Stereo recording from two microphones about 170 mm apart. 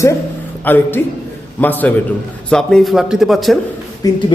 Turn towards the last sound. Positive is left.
turn(degrees=20)  # may be behind; listen again after turning